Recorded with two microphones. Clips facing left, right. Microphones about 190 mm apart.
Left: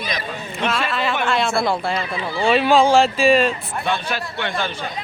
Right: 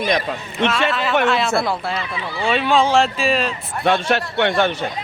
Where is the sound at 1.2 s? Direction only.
Centre (ahead or behind).